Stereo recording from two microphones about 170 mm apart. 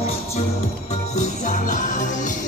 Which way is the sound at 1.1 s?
45° left (ahead or behind).